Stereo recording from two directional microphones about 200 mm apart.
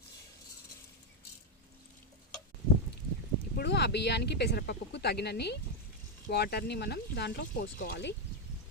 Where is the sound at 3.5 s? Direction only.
55° left (ahead or behind).